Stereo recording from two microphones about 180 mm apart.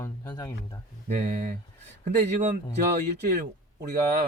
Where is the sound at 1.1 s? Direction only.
45° right (ahead or behind).